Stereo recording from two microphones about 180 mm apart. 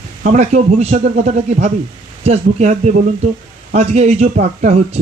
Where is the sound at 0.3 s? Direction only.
40° right (ahead or behind).